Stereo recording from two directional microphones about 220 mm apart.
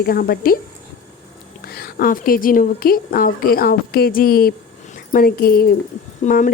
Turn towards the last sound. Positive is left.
turn(degrees=35)  # may be behind; listen again after turning